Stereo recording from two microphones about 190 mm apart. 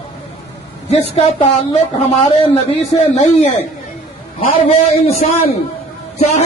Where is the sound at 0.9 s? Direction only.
30° left (ahead or behind).